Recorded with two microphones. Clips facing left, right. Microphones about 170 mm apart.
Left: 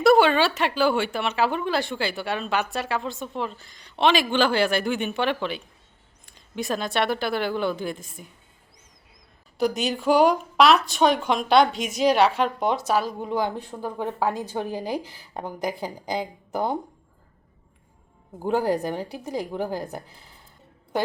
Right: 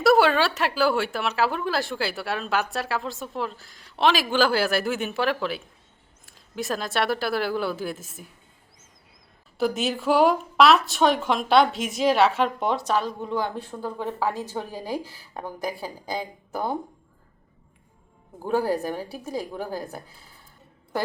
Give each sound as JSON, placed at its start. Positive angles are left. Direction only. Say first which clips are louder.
{"t": 0.0, "sound": "speech", "louder": "left 1 dB", "side_deg": 0}
{"t": 9.6, "sound": "a woman's voice", "louder": "left 1 dB", "side_deg": 0}
{"t": 18.3, "sound": "a woman's voice", "louder": "left 1 dB", "side_deg": 15}